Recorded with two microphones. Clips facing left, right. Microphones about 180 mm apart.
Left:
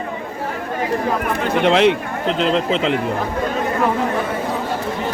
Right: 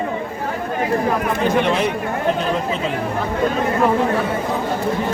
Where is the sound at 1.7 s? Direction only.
90° left.